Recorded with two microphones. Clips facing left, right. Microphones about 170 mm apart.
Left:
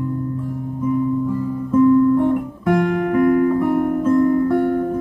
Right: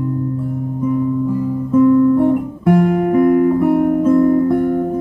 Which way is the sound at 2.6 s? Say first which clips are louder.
Right 4 dB; 10° right (ahead or behind).